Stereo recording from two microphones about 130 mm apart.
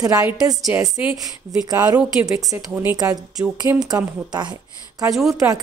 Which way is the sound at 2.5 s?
15° right (ahead or behind).